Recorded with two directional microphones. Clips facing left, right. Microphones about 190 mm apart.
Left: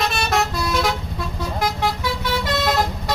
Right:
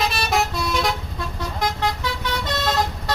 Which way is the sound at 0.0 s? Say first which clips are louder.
Left 1 dB; centre (ahead or behind).